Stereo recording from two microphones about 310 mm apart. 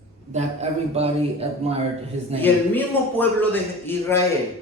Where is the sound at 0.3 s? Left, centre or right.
Centre.